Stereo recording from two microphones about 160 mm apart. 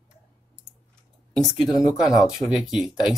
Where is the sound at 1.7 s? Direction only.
25° left (ahead or behind).